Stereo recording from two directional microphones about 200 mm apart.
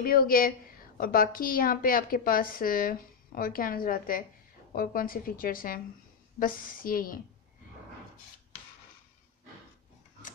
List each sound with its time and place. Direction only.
0.0 s a woman's voice: 45° left (ahead or behind)